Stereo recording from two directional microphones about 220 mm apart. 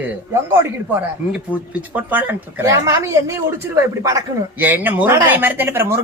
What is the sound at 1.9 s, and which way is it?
Speech, 10° right (ahead or behind).